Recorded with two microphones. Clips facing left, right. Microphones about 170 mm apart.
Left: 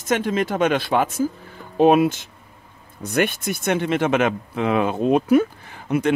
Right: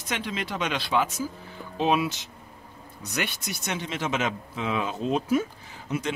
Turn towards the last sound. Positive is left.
turn(degrees=60)  # may be behind; listen again after turning